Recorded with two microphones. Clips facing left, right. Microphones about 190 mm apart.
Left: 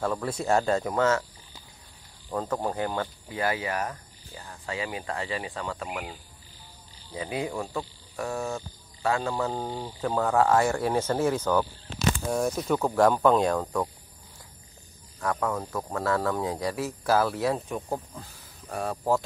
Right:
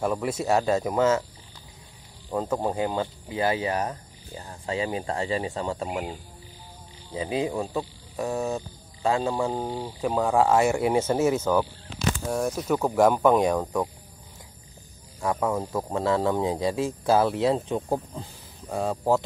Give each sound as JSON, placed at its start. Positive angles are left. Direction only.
{"t": 0.0, "sound": "insect", "side_deg": -10}
{"t": 2.3, "sound": "insect", "side_deg": -10}
{"t": 2.7, "sound": "speech", "side_deg": -25}
{"t": 7.2, "sound": "insect", "side_deg": -20}
{"t": 15.4, "sound": "insect", "side_deg": -10}
{"t": 15.9, "sound": "speech", "side_deg": -25}